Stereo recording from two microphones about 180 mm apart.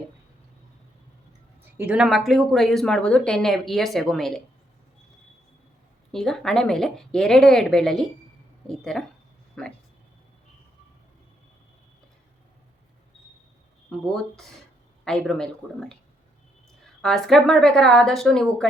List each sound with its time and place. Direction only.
1.8 s speech: 5° right (ahead or behind)
6.1 s speech: centre (ahead or behind)
14.1 s speech: centre (ahead or behind)
17.0 s speech: centre (ahead or behind)